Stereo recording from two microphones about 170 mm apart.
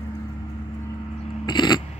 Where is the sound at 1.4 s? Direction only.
25° left (ahead or behind).